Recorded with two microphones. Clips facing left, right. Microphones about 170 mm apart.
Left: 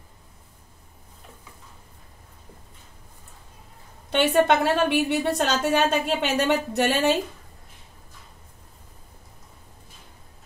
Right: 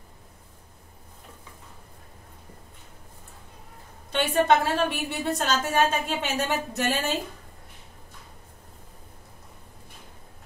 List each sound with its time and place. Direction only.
4.1 s a woman's voice: 70° left (ahead or behind)